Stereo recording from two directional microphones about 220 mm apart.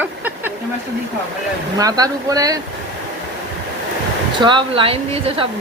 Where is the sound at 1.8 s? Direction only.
15° right (ahead or behind).